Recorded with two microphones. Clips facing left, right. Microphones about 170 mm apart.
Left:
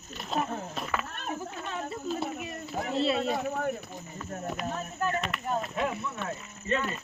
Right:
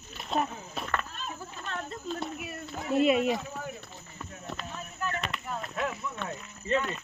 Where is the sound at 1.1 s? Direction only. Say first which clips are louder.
Left 4 dB; 60° left (ahead or behind).